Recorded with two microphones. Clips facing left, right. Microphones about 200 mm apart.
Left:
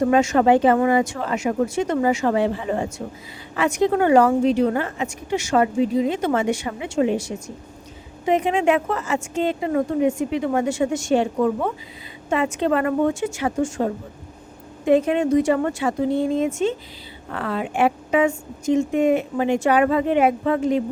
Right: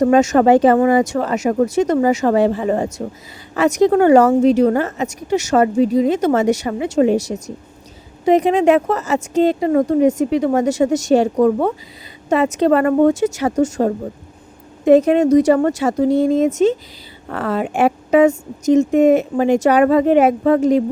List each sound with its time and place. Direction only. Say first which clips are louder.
0.0 s a woman's voice: right 5 dB; 40° right (ahead or behind)